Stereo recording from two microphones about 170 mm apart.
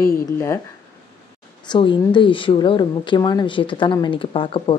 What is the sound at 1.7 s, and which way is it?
A woman's voice, 30° left (ahead or behind).